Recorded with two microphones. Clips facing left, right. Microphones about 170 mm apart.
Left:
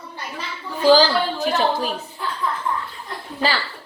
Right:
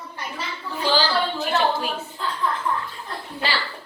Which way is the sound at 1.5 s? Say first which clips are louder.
Even; 40° left (ahead or behind).